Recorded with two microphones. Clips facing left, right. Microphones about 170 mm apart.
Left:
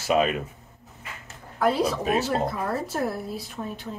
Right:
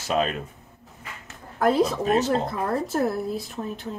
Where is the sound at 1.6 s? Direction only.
45° right (ahead or behind).